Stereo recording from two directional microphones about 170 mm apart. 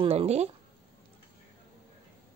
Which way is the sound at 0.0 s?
35° right (ahead or behind).